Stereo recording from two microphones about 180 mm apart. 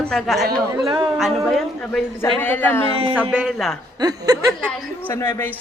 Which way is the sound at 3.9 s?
20° right (ahead or behind).